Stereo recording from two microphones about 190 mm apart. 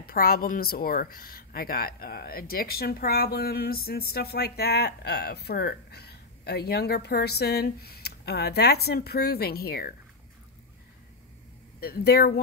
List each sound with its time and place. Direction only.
0.0 s a woman's voice: 50° left (ahead or behind)
11.8 s speech: 55° left (ahead or behind)